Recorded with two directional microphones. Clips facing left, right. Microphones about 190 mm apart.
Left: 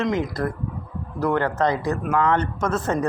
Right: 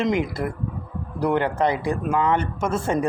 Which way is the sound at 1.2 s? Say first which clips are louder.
Even; 15° right (ahead or behind).